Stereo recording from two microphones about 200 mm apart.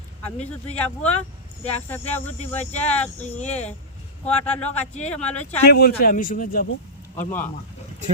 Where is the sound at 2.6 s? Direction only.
35° left (ahead or behind).